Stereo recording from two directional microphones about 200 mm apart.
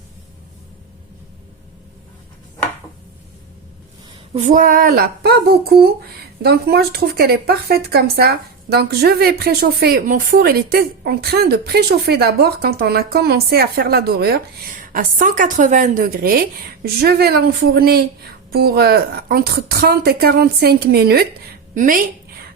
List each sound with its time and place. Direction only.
4.4 s speech: 40° right (ahead or behind)